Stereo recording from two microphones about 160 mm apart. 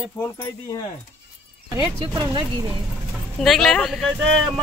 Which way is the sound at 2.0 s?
30° right (ahead or behind).